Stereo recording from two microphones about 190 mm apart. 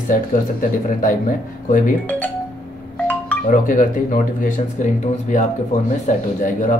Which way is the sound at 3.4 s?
45° left (ahead or behind).